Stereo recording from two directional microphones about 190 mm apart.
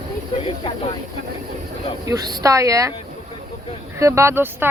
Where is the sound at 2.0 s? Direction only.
20° right (ahead or behind).